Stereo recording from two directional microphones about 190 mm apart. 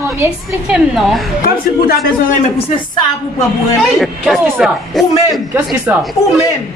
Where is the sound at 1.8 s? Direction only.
50° left (ahead or behind).